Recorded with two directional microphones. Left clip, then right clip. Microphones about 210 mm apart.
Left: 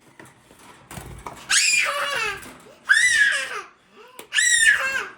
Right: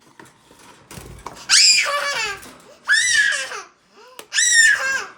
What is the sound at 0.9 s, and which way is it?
Squeak, centre (ahead or behind).